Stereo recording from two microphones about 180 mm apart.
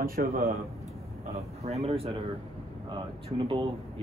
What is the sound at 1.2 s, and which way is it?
Speech, 35° right (ahead or behind).